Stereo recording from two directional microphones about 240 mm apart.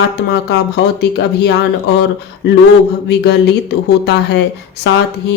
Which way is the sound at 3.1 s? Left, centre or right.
Left.